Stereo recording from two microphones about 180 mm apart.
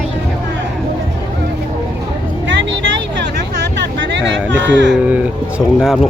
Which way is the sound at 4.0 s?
80° right.